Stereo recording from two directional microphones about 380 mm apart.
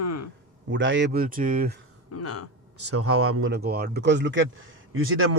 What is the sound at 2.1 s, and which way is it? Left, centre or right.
Speech, left.